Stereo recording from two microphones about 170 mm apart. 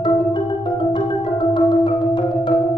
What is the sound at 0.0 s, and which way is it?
Marimba, 30° left (ahead or behind).